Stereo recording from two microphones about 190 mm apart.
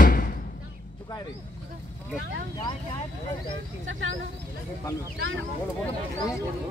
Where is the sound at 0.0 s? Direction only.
45° left (ahead or behind).